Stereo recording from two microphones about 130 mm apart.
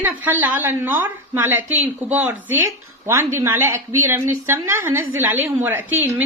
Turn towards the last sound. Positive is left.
turn(degrees=-15)  # may be behind; listen again after turning